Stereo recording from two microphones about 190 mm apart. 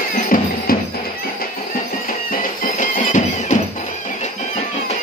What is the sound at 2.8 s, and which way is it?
Music, 40° left (ahead or behind).